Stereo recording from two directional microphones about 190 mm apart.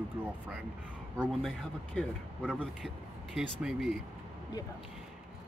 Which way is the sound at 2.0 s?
Centre (ahead or behind).